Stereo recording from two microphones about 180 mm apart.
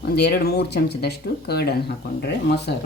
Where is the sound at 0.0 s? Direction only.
60° left (ahead or behind).